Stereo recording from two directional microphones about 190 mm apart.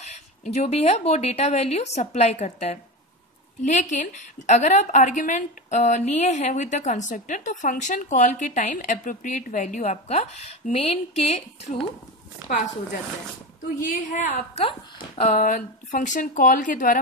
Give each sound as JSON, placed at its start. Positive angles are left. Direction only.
{"t": 0.0, "sound": "a woman's voice", "side_deg": 35}
{"t": 13.7, "sound": "a woman's voice", "side_deg": 40}
{"t": 15.3, "sound": "speech", "side_deg": 45}